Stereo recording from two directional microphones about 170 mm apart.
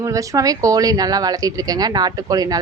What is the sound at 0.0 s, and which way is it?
Speech, 20° right (ahead or behind).